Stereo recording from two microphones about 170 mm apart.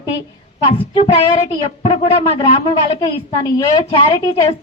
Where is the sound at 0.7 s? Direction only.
35° left (ahead or behind).